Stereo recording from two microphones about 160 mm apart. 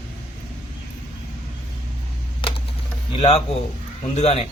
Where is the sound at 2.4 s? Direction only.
30° left (ahead or behind).